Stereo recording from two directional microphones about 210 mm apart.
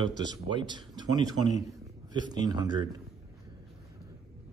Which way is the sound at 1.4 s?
90° left.